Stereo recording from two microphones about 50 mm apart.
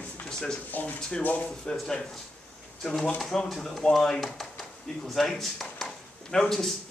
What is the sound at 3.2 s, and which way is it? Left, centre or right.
Speech, centre.